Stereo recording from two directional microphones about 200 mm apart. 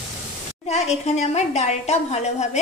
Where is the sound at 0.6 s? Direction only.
35° left (ahead or behind).